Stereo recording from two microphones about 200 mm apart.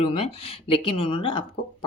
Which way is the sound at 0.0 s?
30° left (ahead or behind).